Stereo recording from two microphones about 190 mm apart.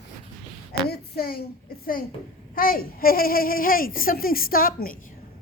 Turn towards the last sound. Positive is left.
turn(degrees=50)  # may be behind; listen again after turning